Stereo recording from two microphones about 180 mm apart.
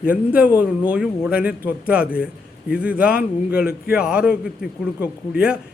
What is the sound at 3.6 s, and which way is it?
Speech, 55° left (ahead or behind).